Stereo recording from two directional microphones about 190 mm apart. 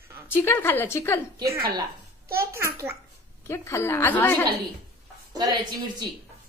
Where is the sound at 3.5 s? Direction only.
15° left (ahead or behind).